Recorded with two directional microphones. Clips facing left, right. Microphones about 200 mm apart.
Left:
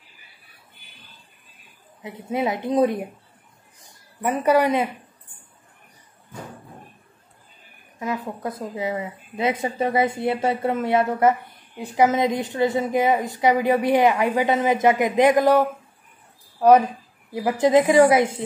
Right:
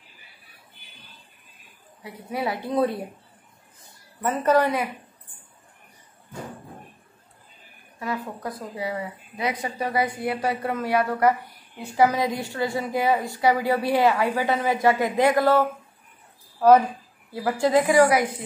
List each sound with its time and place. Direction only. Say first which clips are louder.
2.0 s a woman's voice: left 4 dB; 20° left (ahead or behind)
3.8 s a sound: left 2 dB; 15° left (ahead or behind)
8.0 s a woman's voice: left 3 dB; 20° left (ahead or behind)